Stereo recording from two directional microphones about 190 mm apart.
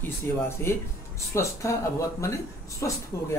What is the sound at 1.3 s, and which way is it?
Speech, 15° left (ahead or behind).